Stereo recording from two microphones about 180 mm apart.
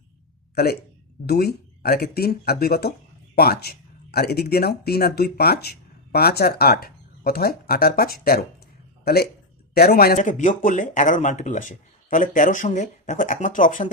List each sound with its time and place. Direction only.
0.5 s speech: 60° left (ahead or behind)
9.7 s speech: 55° left (ahead or behind)
10.2 s speech: 45° left (ahead or behind)